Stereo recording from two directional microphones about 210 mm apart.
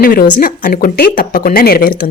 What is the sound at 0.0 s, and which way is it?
A woman's voice, 45° left (ahead or behind).